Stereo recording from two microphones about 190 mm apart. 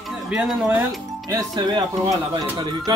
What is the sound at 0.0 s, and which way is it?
Speech, centre (ahead or behind).